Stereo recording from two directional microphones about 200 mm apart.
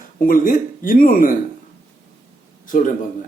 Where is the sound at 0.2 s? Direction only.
40° left (ahead or behind).